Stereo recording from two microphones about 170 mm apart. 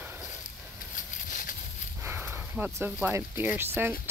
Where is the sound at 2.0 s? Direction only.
15° right (ahead or behind).